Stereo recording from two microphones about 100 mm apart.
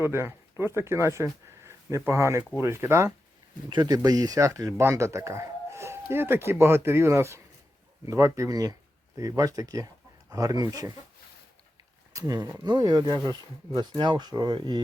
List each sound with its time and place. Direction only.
0.0 s speech: 25° right (ahead or behind)
3.7 s speech: 45° right (ahead or behind)
12.1 s speech: 40° right (ahead or behind)